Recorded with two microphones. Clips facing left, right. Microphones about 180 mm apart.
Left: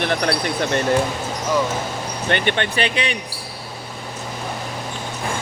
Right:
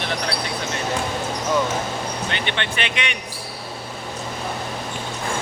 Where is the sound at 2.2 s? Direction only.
55° left (ahead or behind); by 3.2 s 35° left (ahead or behind).